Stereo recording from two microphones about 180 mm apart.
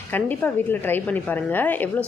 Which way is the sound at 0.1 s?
10° left (ahead or behind).